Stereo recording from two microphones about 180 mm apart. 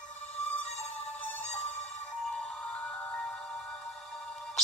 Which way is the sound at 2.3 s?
5° left (ahead or behind).